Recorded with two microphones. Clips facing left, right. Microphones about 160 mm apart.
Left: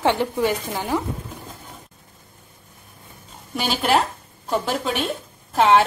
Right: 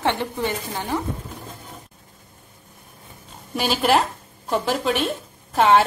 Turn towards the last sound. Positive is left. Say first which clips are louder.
# even
turn(degrees=0)  # may be behind; listen again after turning